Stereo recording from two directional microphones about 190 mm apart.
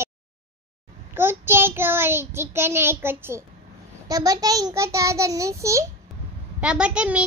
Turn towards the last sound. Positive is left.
turn(degrees=-5)  # may be behind; listen again after turning